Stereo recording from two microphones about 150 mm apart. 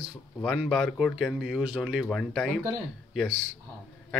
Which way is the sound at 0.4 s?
Centre (ahead or behind).